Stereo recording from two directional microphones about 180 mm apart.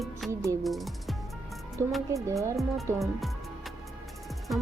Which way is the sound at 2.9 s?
Centre (ahead or behind).